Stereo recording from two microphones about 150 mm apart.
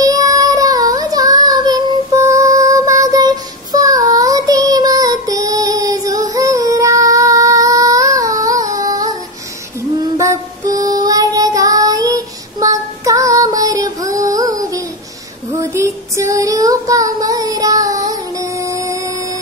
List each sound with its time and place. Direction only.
0.0 s child singing: 25° right (ahead or behind)
10.1 s music: 20° right (ahead or behind)
10.9 s child singing: 25° right (ahead or behind)
15.5 s female singing: 20° right (ahead or behind)